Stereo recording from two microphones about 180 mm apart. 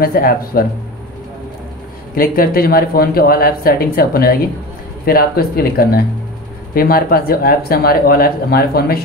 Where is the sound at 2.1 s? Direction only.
50° left (ahead or behind).